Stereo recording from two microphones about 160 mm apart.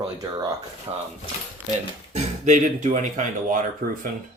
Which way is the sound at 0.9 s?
30° right (ahead or behind).